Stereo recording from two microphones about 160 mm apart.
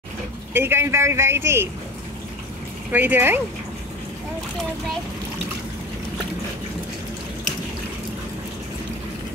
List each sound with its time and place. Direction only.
0.5 s a man's voice: 15° right (ahead or behind)
2.9 s a man's voice: 10° right (ahead or behind)